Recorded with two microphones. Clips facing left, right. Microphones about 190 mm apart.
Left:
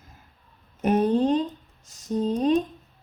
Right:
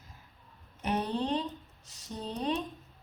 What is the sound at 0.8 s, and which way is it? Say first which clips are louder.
Speech: left 11 dB; 45° left (ahead or behind).